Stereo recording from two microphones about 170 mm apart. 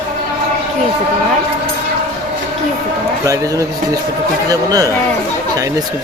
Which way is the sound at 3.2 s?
20° right (ahead or behind).